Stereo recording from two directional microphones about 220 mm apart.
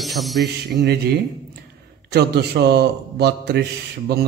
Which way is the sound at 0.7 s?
50° right (ahead or behind).